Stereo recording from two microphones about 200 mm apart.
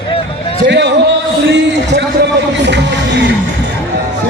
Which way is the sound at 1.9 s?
60° right (ahead or behind).